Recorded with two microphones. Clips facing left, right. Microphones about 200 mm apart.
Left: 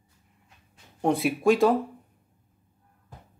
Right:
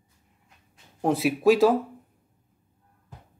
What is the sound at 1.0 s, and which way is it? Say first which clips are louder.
Speech: right 1 dB; centre (ahead or behind).